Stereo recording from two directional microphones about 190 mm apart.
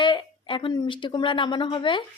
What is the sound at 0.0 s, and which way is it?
A woman's voice, 25° left (ahead or behind).